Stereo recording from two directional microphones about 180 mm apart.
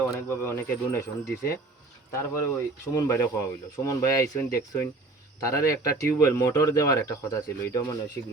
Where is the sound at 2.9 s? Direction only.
15° left (ahead or behind).